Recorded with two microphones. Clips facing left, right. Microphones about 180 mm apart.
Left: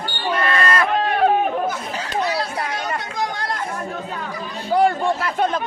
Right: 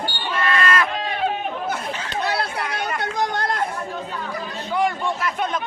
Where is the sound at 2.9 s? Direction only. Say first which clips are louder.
Right 2 dB; 60° right (ahead or behind).